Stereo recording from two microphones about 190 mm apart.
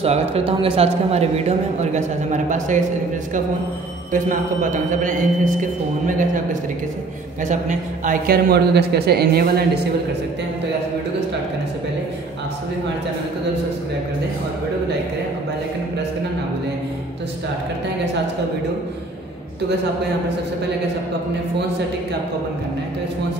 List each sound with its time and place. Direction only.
0.0 s a man's voice: 30° right (ahead or behind)
4.1 s a man's voice: 45° right (ahead or behind)